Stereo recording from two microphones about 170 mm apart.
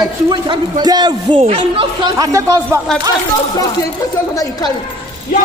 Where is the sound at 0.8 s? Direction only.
25° right (ahead or behind).